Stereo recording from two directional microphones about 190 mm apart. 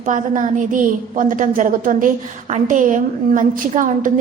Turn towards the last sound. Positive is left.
turn(degrees=-40)  # may be behind; listen again after turning